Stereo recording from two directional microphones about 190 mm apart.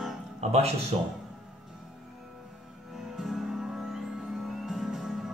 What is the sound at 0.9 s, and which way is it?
Speech, 30° right (ahead or behind).